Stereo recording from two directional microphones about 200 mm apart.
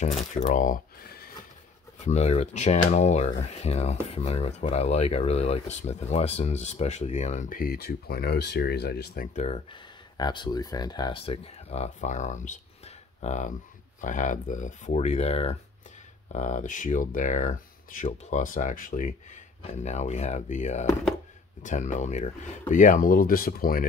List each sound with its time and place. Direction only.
0.0 s speech: 35° left (ahead or behind)
10.1 s speech: 20° left (ahead or behind); by 23.9 s 45° left (ahead or behind)